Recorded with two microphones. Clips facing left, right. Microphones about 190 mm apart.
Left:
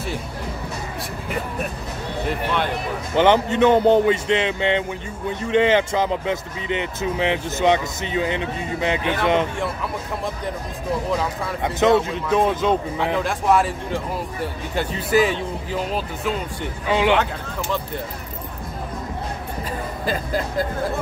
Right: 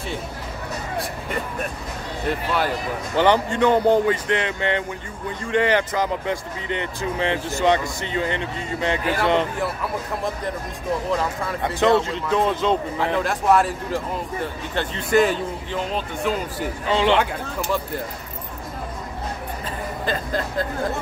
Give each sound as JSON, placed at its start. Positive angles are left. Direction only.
{"t": 0.9, "sound": "speech", "side_deg": 5}
{"t": 3.2, "sound": "speech", "side_deg": 20}
{"t": 12.1, "sound": "speech", "side_deg": 15}
{"t": 13.0, "sound": "speech", "side_deg": 0}
{"t": 16.8, "sound": "speech", "side_deg": 15}
{"t": 20.1, "sound": "speech", "side_deg": 10}